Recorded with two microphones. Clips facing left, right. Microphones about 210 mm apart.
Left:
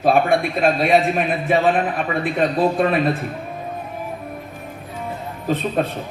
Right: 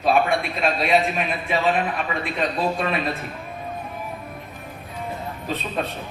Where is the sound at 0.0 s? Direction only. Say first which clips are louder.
Left 4 dB; 55° left (ahead or behind).